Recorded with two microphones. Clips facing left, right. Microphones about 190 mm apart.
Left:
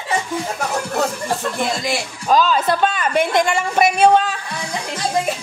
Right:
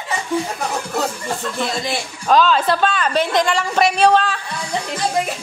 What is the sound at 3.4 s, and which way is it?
Speech, 10° left (ahead or behind).